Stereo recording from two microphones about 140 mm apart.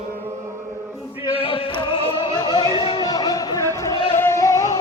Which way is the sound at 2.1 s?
35° left (ahead or behind).